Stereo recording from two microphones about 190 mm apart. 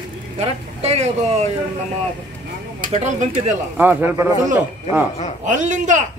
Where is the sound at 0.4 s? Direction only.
35° right (ahead or behind).